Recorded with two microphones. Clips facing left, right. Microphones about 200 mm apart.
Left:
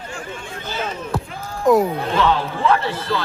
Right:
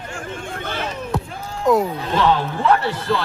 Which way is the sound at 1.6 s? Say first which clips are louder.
Left 2 dB; centre (ahead or behind).